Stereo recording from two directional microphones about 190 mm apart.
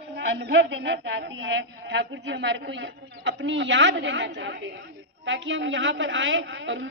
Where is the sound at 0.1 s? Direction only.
65° right (ahead or behind).